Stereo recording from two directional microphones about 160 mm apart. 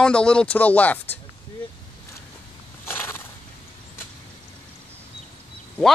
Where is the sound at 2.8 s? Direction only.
15° left (ahead or behind).